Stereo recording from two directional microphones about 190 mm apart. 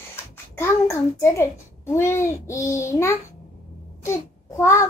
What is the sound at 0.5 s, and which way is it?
A child's voice, 15° left (ahead or behind).